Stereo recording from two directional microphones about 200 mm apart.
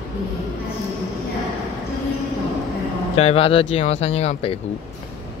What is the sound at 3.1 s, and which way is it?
Speech, 30° left (ahead or behind).